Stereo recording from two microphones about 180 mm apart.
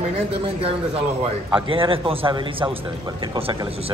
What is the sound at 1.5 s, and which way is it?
A man's voice, 30° right (ahead or behind).